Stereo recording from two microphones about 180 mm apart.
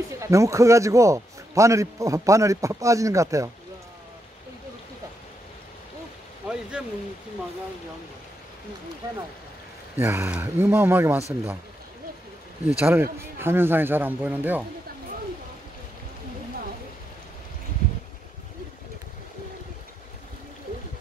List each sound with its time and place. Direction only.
0.2 s a man's voice: 15° right (ahead or behind)
6.4 s rain: 5° right (ahead or behind)
9.9 s a man's voice: 15° right (ahead or behind)
12.6 s a man's voice: 10° right (ahead or behind)